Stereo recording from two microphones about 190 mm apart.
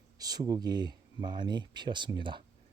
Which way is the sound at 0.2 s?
20° right (ahead or behind).